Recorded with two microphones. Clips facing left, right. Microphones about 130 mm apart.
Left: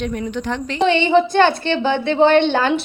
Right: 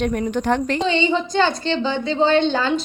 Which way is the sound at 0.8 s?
65° left (ahead or behind).